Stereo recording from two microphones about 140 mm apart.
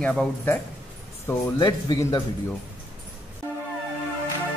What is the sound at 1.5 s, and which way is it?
Speech, 25° left (ahead or behind).